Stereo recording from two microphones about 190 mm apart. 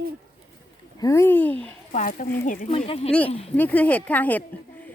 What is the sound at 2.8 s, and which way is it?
Speech, 30° left (ahead or behind).